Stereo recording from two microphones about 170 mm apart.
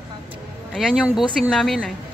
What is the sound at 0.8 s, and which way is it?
Speech, centre (ahead or behind).